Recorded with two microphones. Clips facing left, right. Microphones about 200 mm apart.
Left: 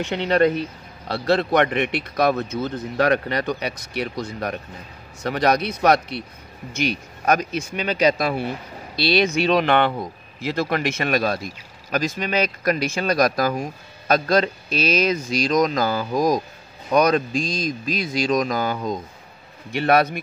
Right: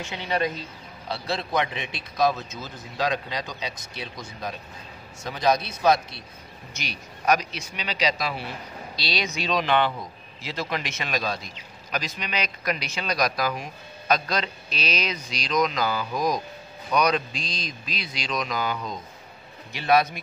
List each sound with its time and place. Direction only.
0.0 s a man's voice: 65° left (ahead or behind)
6.7 s speech: 55° left (ahead or behind)
19.7 s a man's voice: 55° left (ahead or behind)